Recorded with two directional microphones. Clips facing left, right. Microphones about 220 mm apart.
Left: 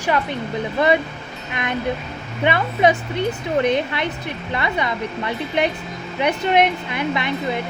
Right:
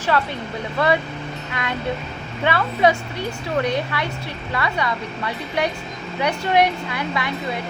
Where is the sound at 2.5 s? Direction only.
20° left (ahead or behind).